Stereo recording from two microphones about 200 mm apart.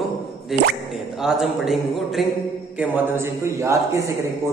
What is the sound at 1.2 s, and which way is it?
Speech, centre (ahead or behind).